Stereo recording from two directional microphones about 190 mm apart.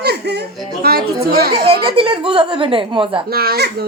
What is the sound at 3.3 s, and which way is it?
Speech, 55° right (ahead or behind).